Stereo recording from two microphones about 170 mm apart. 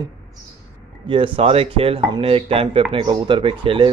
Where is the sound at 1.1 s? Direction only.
35° right (ahead or behind).